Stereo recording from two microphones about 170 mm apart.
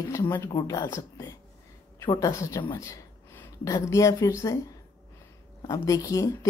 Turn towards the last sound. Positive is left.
turn(degrees=20)  # may be behind; listen again after turning